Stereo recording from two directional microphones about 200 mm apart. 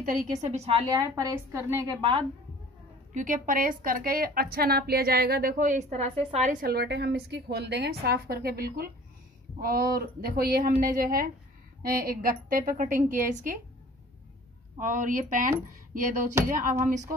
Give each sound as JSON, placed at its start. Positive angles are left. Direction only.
{"t": 0.0, "sound": "a woman's voice", "side_deg": -40}
{"t": 3.2, "sound": "a woman's voice", "side_deg": -40}
{"t": 14.8, "sound": "a woman's voice", "side_deg": -40}